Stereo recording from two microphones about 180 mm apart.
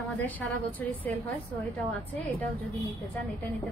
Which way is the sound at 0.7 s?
10° left (ahead or behind).